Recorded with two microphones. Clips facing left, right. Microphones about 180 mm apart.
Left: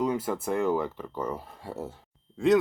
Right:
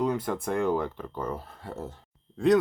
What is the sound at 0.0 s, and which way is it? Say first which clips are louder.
Speech: even; 5° left (ahead or behind).